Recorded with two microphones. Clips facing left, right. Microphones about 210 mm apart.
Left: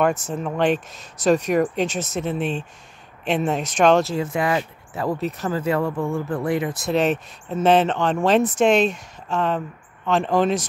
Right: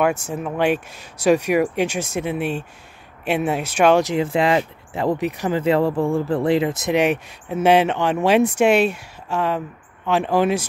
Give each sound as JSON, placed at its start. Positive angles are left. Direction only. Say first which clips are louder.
{"t": 0.0, "sound": "speech", "louder": "right 1 dB", "side_deg": -10}
{"t": 4.3, "sound": "speech", "louder": "right 4 dB", "side_deg": -25}
{"t": 5.6, "sound": "speech", "louder": "right 5 dB", "side_deg": -30}
{"t": 6.9, "sound": "speech", "louder": "even", "side_deg": -10}